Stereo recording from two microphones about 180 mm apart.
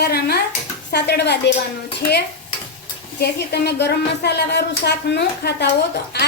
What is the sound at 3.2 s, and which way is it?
A woman's voice, 65° left (ahead or behind).